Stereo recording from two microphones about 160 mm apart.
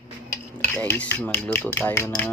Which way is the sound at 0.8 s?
10° left (ahead or behind).